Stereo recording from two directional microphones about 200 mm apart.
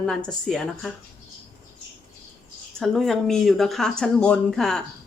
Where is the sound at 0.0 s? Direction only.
5° left (ahead or behind).